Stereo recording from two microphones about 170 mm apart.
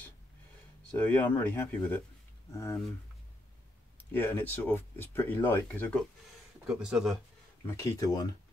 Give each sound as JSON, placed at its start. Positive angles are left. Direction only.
{"t": 0.9, "sound": "speech", "side_deg": 10}
{"t": 4.1, "sound": "speech", "side_deg": 10}
{"t": 6.7, "sound": "speech", "side_deg": -5}
{"t": 7.6, "sound": "speech", "side_deg": 20}